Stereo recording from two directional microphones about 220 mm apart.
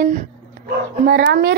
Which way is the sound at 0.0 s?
35° right (ahead or behind).